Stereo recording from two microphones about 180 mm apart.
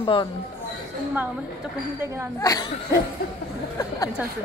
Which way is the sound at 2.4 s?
20° left (ahead or behind).